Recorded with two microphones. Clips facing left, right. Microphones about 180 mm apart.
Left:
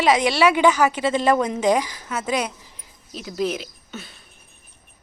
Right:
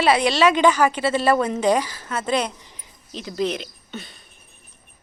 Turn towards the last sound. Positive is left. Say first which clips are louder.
# right 1 dB
turn(degrees=5)  # may be behind; listen again after turning